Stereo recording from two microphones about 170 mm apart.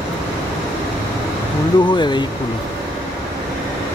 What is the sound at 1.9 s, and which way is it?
Speech, 25° left (ahead or behind).